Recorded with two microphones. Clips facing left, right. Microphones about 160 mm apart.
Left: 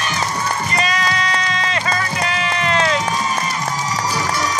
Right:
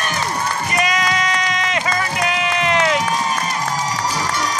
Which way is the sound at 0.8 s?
20° right (ahead or behind).